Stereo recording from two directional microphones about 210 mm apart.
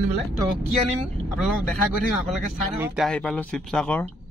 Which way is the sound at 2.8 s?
Centre (ahead or behind).